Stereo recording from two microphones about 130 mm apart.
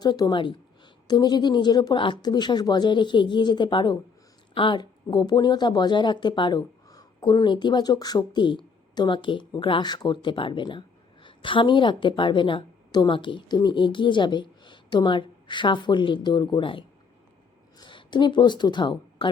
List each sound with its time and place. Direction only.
0.0 s speech: 30° left (ahead or behind)